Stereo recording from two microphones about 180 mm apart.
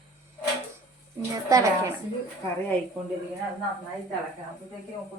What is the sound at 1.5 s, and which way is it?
Speech, 15° right (ahead or behind).